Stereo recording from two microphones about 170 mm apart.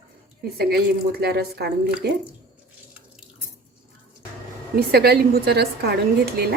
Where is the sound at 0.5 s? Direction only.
70° right (ahead or behind).